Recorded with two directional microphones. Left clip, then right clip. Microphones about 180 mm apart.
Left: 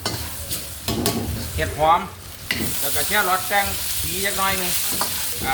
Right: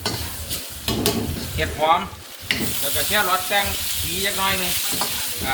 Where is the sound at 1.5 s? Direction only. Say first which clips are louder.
Left 1 dB; 25° left (ahead or behind).